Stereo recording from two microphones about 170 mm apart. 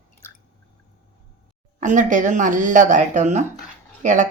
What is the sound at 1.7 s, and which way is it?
Speech, 50° right (ahead or behind).